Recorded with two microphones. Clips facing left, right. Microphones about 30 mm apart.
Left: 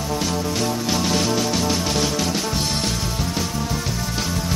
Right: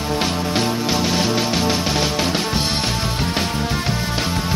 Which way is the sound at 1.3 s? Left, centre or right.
Right.